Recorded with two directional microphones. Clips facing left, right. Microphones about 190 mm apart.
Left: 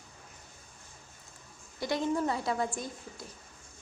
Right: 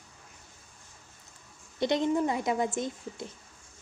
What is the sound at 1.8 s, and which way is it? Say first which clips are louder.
A woman's voice: right 4 dB; 20° right (ahead or behind).